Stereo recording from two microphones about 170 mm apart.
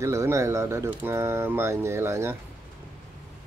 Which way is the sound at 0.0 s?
15° right (ahead or behind).